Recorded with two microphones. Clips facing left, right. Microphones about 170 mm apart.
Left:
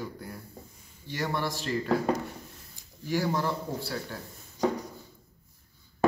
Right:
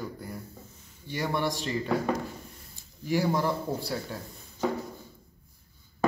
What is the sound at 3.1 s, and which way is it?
A man's voice, 10° right (ahead or behind).